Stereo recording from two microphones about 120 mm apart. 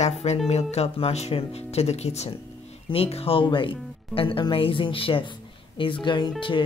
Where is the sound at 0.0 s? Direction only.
65° left (ahead or behind).